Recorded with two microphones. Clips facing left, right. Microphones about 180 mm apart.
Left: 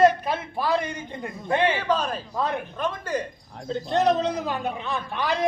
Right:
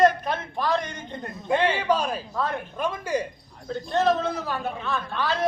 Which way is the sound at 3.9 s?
20° left (ahead or behind).